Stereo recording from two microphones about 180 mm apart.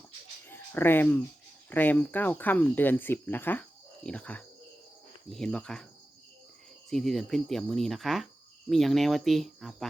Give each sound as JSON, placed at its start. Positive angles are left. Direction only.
{"t": 0.4, "sound": "a sound", "side_deg": 10}
{"t": 1.7, "sound": "speech", "side_deg": 10}
{"t": 6.9, "sound": "speech", "side_deg": 0}